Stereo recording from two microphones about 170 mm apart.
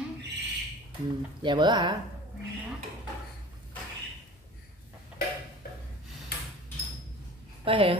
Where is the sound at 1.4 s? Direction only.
25° right (ahead or behind).